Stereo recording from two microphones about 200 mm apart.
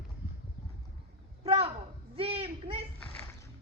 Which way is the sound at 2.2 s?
30° right (ahead or behind).